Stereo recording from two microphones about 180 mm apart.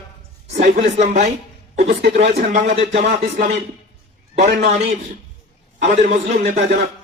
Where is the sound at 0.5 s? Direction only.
40° right (ahead or behind).